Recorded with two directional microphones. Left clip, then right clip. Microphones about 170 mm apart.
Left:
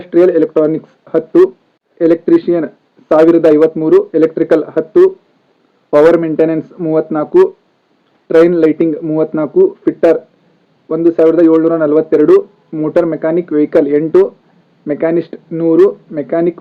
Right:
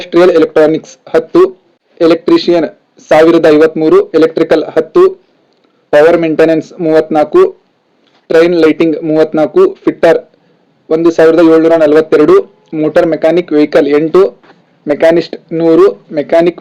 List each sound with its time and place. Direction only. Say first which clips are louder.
0.0 s a man's voice: right 3 dB; 20° right (ahead or behind)
6.0 s a man's voice: right 1 dB; 35° right (ahead or behind)
6.2 s a man's voice: right 5 dB; 20° right (ahead or behind)
8.3 s a man's voice: right 2 dB; 25° right (ahead or behind)